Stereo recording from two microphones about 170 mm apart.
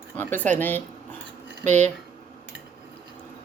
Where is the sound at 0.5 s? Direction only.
10° left (ahead or behind).